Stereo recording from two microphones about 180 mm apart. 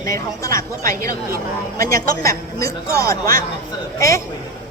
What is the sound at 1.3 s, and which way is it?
Speech, 55° right (ahead or behind).